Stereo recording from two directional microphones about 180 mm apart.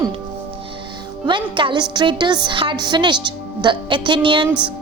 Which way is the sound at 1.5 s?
25° right (ahead or behind).